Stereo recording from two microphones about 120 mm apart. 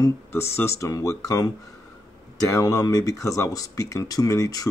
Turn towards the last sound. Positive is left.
turn(degrees=30)  # may be behind; listen again after turning